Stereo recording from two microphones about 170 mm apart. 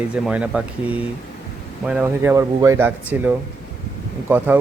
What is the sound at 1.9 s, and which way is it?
Speech, 10° right (ahead or behind).